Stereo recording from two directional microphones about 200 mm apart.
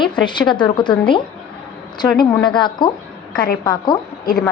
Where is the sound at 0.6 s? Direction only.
25° left (ahead or behind).